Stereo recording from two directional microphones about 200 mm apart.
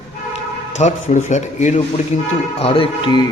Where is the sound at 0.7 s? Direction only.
35° left (ahead or behind).